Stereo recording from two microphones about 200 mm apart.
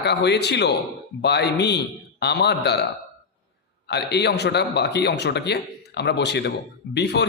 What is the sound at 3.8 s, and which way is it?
A man's voice, 55° left (ahead or behind).